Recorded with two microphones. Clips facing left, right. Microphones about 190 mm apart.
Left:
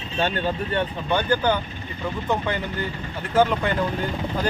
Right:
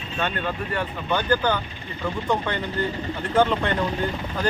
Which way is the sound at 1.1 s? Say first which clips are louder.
Even; 15° left (ahead or behind).